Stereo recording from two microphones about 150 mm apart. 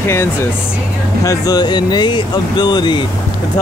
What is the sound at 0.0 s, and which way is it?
Speech, 15° left (ahead or behind).